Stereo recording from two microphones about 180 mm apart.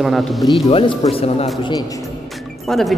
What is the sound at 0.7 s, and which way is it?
Speech, 30° left (ahead or behind).